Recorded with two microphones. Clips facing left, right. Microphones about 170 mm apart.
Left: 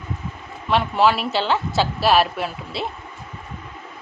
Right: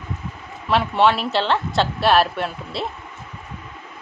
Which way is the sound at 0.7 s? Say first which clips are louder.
Even; centre (ahead or behind).